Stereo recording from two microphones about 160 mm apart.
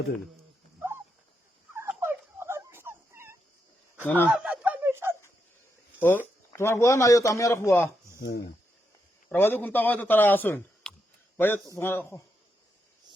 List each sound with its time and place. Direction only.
1.7 s turkey: 15° right (ahead or behind)
4.0 s a man's voice: 10° left (ahead or behind)
4.3 s a sound: 5° right (ahead or behind)
6.0 s a man's voice: 10° left (ahead or behind)
9.3 s a man's voice: 10° left (ahead or behind)